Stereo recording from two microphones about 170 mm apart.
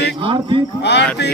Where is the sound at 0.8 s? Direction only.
85° left.